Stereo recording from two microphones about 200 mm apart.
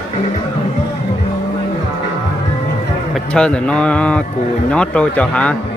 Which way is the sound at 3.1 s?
5° left (ahead or behind).